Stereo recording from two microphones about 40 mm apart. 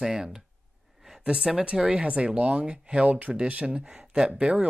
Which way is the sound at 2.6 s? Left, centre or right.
Right.